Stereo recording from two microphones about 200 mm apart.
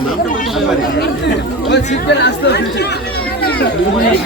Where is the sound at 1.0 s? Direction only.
60° left (ahead or behind).